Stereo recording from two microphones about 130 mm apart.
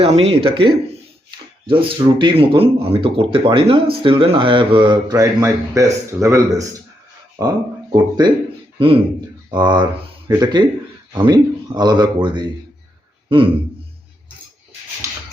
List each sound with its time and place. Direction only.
0.0 s speech: 50° right (ahead or behind); by 7.5 s 20° right (ahead or behind)
7.9 s speech: 30° right (ahead or behind)
8.8 s speech: 45° right (ahead or behind)